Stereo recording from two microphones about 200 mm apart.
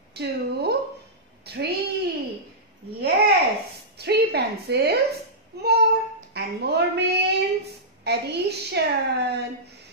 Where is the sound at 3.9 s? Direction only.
55° right (ahead or behind).